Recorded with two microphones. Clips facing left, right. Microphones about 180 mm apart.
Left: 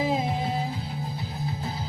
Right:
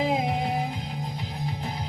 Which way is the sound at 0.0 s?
15° right (ahead or behind).